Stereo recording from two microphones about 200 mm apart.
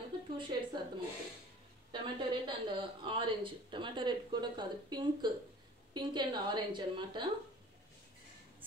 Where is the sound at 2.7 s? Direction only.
25° right (ahead or behind).